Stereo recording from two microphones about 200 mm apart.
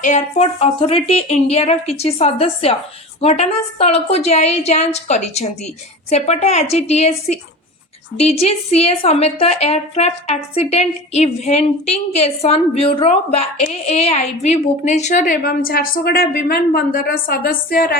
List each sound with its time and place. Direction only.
0.0 s a woman's voice: 35° left (ahead or behind)